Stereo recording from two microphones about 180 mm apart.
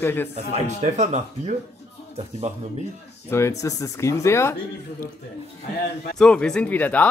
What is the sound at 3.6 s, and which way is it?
Speech, 20° left (ahead or behind).